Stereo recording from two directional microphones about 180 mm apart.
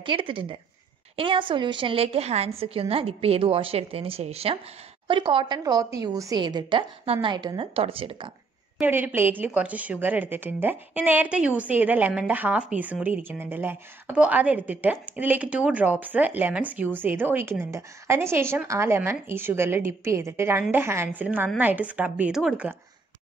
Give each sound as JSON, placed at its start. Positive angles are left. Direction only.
{"t": 0.0, "sound": "a woman's voice", "side_deg": -30}
{"t": 8.7, "sound": "a woman's voice", "side_deg": -10}